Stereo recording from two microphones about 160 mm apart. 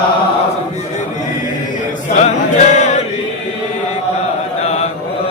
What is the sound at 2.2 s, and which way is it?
Music, 45° left (ahead or behind).